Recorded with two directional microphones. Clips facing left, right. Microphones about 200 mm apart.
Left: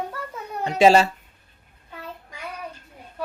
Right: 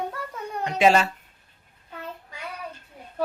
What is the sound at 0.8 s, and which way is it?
Speech, 30° left (ahead or behind).